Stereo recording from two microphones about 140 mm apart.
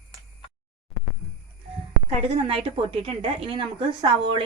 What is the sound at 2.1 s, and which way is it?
A woman's voice, 45° right (ahead or behind).